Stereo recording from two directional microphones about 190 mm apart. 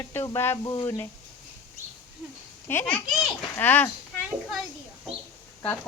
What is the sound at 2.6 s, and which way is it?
Speech, 10° left (ahead or behind).